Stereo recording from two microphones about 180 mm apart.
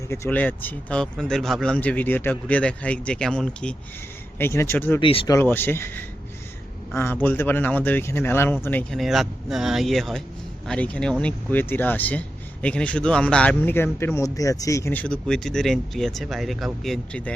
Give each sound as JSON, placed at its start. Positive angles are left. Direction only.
{"t": 0.1, "sound": "a man's voice", "side_deg": 10}
{"t": 4.9, "sound": "speech", "side_deg": 30}
{"t": 5.3, "sound": "a man's voice", "side_deg": 10}
{"t": 9.0, "sound": "a man's voice", "side_deg": 0}